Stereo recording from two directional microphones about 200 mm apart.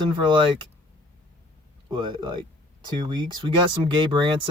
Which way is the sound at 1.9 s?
20° right (ahead or behind).